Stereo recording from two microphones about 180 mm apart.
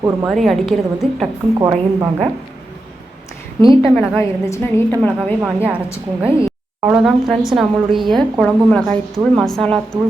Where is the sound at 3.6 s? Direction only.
25° right (ahead or behind).